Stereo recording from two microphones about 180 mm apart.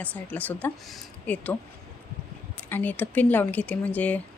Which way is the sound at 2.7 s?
10° left (ahead or behind).